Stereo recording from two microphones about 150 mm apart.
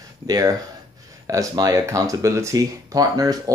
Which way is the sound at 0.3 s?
25° right (ahead or behind).